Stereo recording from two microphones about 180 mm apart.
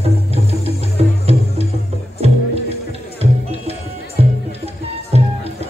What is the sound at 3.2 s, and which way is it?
Music, 35° right (ahead or behind).